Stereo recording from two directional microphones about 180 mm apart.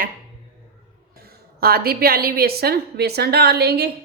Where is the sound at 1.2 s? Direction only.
60° right (ahead or behind).